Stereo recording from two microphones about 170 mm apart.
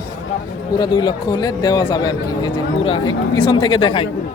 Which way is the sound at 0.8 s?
25° left (ahead or behind).